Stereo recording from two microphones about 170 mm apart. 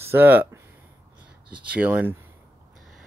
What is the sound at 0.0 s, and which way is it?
Speech, 15° right (ahead or behind).